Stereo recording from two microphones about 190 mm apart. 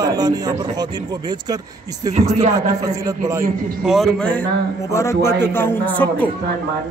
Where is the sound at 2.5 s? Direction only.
15° right (ahead or behind).